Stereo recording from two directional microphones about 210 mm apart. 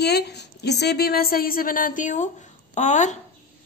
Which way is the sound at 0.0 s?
50° left (ahead or behind).